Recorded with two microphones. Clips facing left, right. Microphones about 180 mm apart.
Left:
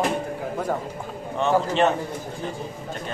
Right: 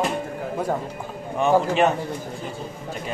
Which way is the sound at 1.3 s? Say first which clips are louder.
Right 2 dB; 10° right (ahead or behind).